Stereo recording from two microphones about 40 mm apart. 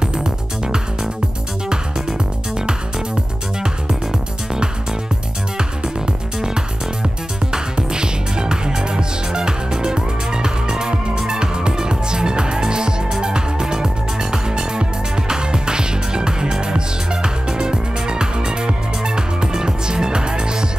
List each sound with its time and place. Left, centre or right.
0.0 s music: centre
7.7 s music: centre